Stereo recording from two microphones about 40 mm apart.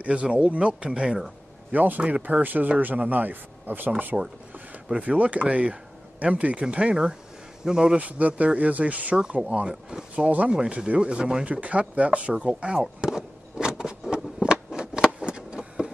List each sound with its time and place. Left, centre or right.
0.0 s speech: right
1.7 s speech: right
4.1 s speech: right
5.0 s a man's voice: right; by 8.0 s centre
8.0 s speech: right
9.5 s speech: right
10.1 s speech: right
10.5 s speech: right
12.8 s a sound: centre
15.1 s vehicle: right